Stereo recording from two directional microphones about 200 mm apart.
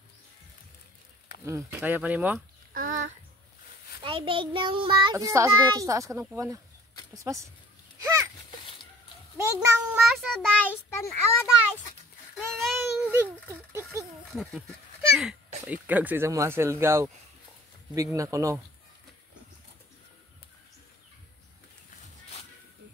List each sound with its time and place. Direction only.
1.4 s speech: 15° right (ahead or behind)
2.7 s a sound: 40° right (ahead or behind)
4.0 s a child's voice: 25° right (ahead or behind)
9.4 s speech: 15° right (ahead or behind)
10.0 s a child's voice: centre (ahead or behind)
12.4 s a sound: centre (ahead or behind)
13.1 s a sound: 10° right (ahead or behind)
14.3 s speech: centre (ahead or behind)
15.6 s speech: 10° right (ahead or behind)